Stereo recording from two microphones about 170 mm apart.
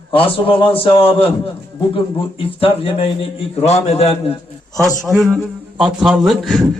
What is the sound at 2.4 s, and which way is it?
A man's voice, 35° left (ahead or behind).